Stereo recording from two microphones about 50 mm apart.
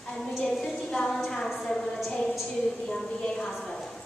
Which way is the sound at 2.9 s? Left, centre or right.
Centre.